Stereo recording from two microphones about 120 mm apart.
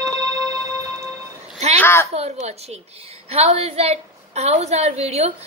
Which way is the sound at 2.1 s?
60° right (ahead or behind).